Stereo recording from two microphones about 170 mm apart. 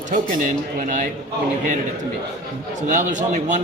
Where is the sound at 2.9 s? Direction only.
50° right (ahead or behind).